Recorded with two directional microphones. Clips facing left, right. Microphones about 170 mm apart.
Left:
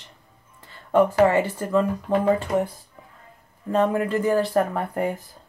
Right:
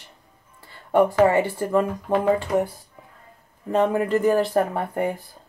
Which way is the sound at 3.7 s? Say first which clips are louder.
Right 1 dB; 20° right (ahead or behind).